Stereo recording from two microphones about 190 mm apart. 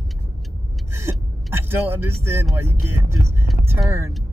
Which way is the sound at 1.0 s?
10° right (ahead or behind).